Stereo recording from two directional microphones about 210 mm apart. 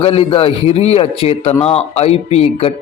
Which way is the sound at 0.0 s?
30° left (ahead or behind).